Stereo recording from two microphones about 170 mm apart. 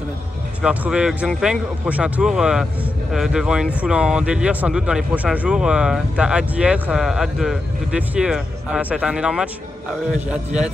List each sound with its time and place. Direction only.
0.6 s a man's voice: 5° right (ahead or behind)